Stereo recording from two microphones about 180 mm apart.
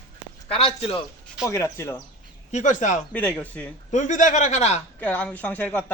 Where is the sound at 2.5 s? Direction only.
40° left (ahead or behind).